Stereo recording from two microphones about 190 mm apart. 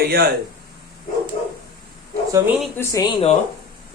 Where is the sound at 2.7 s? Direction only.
20° left (ahead or behind).